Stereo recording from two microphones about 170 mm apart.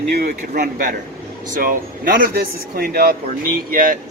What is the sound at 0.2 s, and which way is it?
Speech, 65° right (ahead or behind).